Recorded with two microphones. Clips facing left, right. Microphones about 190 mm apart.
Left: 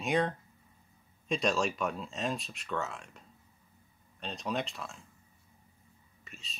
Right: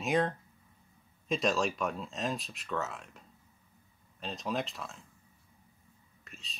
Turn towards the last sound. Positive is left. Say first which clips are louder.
# left 1 dB
turn(degrees=0)  # may be behind; listen again after turning